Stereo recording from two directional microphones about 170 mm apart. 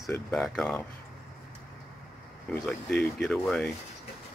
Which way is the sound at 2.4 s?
10° left (ahead or behind).